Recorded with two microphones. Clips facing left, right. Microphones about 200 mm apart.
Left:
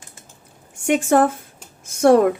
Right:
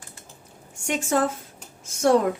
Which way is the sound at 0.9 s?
55° left (ahead or behind).